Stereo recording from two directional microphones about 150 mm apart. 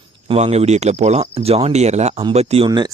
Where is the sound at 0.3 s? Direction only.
45° right (ahead or behind).